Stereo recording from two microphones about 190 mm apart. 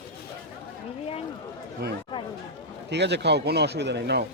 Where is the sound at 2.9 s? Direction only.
65° right (ahead or behind).